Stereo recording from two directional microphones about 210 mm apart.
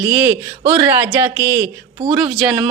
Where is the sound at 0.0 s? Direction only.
10° right (ahead or behind).